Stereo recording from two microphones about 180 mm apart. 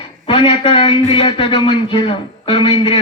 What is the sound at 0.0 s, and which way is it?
A man's voice, 25° left (ahead or behind).